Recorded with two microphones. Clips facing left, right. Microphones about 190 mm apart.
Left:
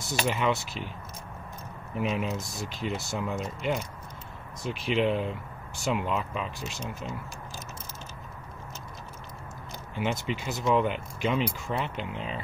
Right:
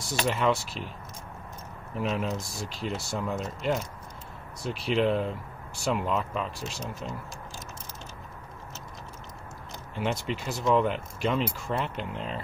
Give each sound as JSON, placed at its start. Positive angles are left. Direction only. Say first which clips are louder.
{"t": 0.1, "sound": "speech", "louder": "right 1 dB", "side_deg": 5}
{"t": 2.0, "sound": "speech", "louder": "even", "side_deg": 0}
{"t": 9.9, "sound": "speech", "louder": "even", "side_deg": 0}